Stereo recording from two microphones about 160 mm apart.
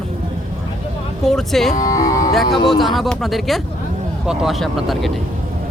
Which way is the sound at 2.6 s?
Centre (ahead or behind).